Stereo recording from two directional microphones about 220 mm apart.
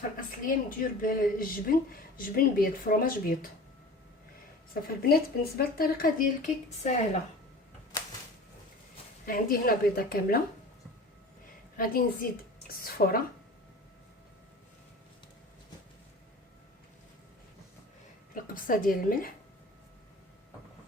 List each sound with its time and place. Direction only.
0.2 s a woman's voice: 40° left (ahead or behind)
4.7 s a woman's voice: 45° left (ahead or behind)
9.2 s a woman's voice: 40° left (ahead or behind)
11.8 s a woman's voice: 40° left (ahead or behind)
18.3 s a woman's voice: 40° left (ahead or behind)